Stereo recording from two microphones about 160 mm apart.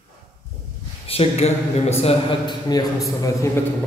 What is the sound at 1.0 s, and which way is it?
Speech, 40° left (ahead or behind).